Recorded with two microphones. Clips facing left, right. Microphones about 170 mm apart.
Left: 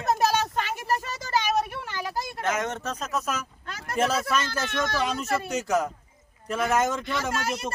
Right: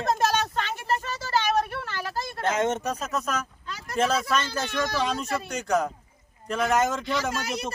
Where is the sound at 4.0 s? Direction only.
5° left (ahead or behind).